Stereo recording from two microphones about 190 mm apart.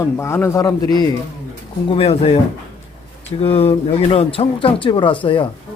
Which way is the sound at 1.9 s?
30° left (ahead or behind).